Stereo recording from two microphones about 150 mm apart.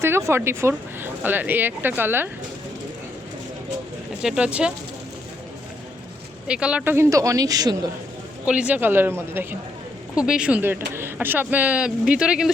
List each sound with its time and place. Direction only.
0.0 s speech: 15° right (ahead or behind)
4.2 s speech: 5° right (ahead or behind)
6.5 s speech: 5° right (ahead or behind); by 7.8 s 25° right (ahead or behind)
8.4 s speech: 10° right (ahead or behind)